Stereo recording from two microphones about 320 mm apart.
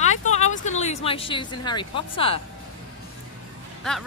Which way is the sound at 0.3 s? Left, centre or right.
Left.